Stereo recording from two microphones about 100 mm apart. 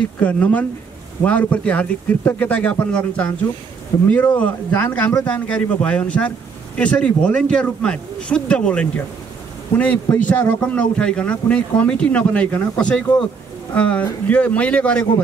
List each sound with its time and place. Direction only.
0.2 s speech: 15° left (ahead or behind)
3.9 s speech: 35° left (ahead or behind)
4.4 s speech: 15° left (ahead or behind)